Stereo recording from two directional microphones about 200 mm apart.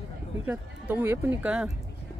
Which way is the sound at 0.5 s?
10° right (ahead or behind).